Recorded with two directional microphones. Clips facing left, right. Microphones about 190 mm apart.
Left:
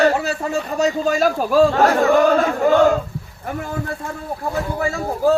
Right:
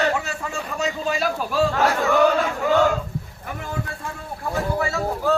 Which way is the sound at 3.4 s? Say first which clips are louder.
Left 9 dB; 45° left (ahead or behind).